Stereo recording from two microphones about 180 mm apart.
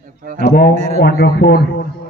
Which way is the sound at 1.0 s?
65° left (ahead or behind).